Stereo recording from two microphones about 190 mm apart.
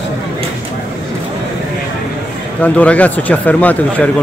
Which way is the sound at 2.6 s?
5° left (ahead or behind).